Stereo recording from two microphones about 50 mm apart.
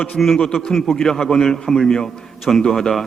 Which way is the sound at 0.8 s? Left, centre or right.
Centre.